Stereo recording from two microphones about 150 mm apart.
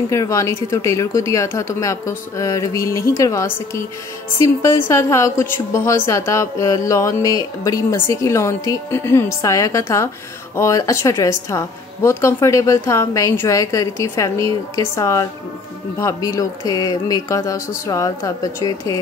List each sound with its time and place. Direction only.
0.1 s a woman's voice: 20° left (ahead or behind)